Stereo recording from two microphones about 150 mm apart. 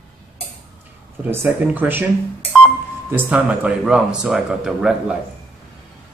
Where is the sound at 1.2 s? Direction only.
10° right (ahead or behind).